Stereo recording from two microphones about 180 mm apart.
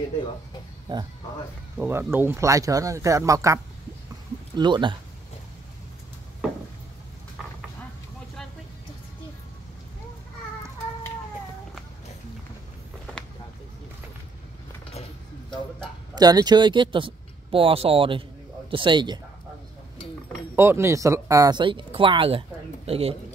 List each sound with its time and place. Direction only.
0.9 s speech: 25° right (ahead or behind)
1.8 s speech: 15° right (ahead or behind)
16.2 s speech: 20° right (ahead or behind)
20.5 s a man's voice: 15° right (ahead or behind); by 23.1 s 35° right (ahead or behind)